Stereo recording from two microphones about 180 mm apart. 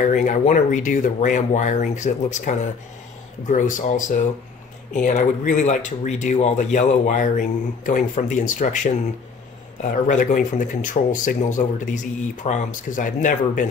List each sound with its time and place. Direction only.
0.0 s speech: 45° left (ahead or behind)